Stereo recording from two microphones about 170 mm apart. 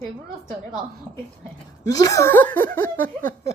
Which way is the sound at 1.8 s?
20° left (ahead or behind).